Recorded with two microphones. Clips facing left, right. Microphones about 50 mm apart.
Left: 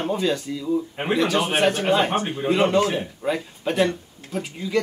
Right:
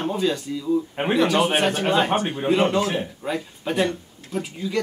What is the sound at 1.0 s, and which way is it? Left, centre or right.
Speech, centre.